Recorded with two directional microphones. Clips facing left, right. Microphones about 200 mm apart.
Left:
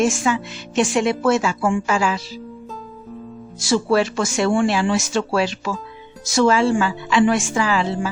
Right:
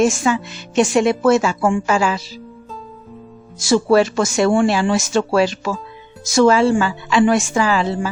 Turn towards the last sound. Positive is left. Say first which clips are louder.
# right 3 dB
turn(degrees=-40)  # may be behind; listen again after turning